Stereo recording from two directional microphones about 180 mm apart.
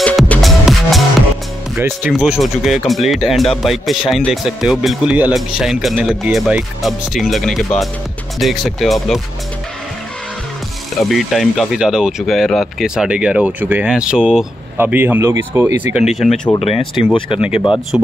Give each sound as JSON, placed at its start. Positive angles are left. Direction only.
{"t": 0.0, "sound": "music", "side_deg": 5}
{"t": 1.8, "sound": "speech", "side_deg": -10}
{"t": 2.1, "sound": "speech", "side_deg": 0}
{"t": 11.0, "sound": "speech", "side_deg": 0}
{"t": 15.9, "sound": "speech", "side_deg": -5}
{"t": 16.5, "sound": "speech", "side_deg": 35}
{"t": 17.9, "sound": "speech", "side_deg": -5}